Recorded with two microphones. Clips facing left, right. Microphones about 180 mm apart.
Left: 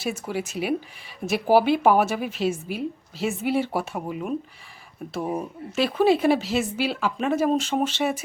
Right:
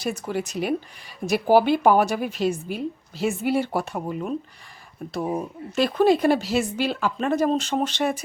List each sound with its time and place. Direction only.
0.0 s speech: 5° left (ahead or behind)